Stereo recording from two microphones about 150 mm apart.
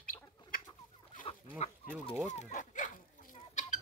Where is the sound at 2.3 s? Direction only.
50° left (ahead or behind).